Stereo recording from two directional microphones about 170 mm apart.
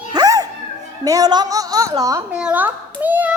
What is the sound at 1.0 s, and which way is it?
Child singing, 20° right (ahead or behind).